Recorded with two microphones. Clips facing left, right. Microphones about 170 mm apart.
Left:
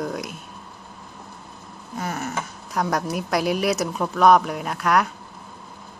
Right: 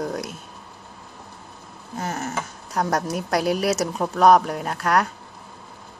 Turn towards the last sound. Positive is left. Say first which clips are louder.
# even
turn(degrees=-35)  # may be behind; listen again after turning